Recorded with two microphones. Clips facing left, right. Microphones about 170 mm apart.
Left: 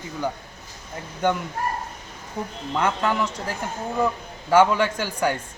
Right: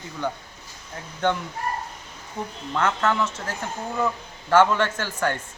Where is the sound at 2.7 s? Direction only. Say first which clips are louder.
Even; 15° left (ahead or behind).